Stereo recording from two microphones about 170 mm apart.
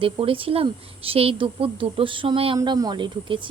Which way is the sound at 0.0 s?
30° right (ahead or behind).